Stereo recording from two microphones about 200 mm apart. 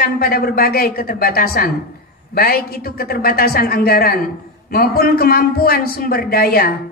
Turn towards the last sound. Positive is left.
turn(degrees=50)  # may be behind; listen again after turning